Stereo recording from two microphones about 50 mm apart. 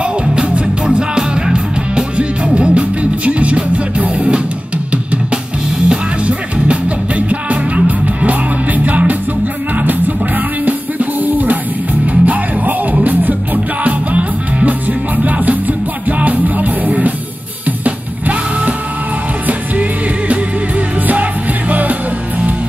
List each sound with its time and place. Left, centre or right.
0.0 s music: centre